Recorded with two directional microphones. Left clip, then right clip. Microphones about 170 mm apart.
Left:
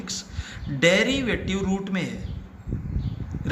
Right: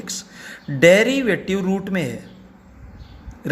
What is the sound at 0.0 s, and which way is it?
Speech, 55° right (ahead or behind).